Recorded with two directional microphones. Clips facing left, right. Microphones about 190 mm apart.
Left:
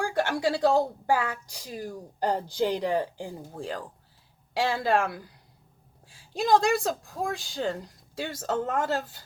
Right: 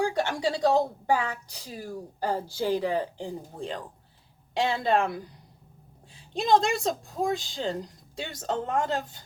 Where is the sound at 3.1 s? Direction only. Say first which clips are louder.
Right 1 dB; 5° left (ahead or behind).